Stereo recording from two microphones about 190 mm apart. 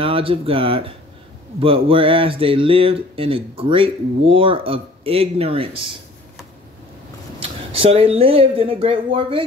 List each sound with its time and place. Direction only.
0.0 s speech: 30° right (ahead or behind)
7.3 s speech: 30° right (ahead or behind)